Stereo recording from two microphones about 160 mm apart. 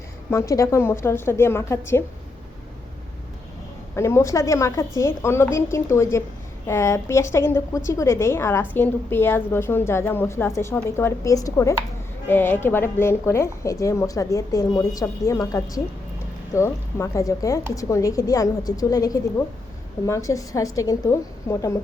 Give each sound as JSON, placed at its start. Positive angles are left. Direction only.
{"t": 0.3, "sound": "a woman's voice", "side_deg": 20}
{"t": 3.9, "sound": "a woman's voice", "side_deg": 15}